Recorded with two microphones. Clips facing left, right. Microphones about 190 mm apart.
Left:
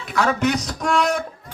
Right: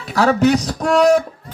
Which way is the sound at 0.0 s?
35° right (ahead or behind).